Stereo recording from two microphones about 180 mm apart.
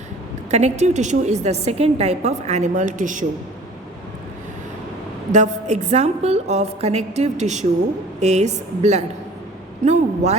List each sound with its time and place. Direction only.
0.5 s a woman's voice: 40° right (ahead or behind)
5.3 s a woman's voice: 40° right (ahead or behind)
9.8 s a sound: 40° right (ahead or behind)